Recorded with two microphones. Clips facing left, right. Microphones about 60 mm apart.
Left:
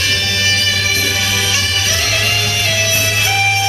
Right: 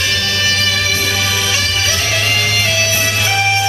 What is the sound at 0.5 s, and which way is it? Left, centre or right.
Music, right.